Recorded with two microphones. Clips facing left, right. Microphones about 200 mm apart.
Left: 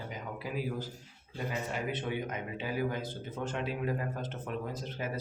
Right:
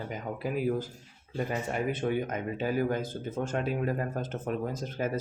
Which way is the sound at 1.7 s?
45° right (ahead or behind).